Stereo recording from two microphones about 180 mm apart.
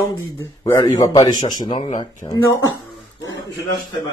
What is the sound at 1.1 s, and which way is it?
Speech, 20° left (ahead or behind).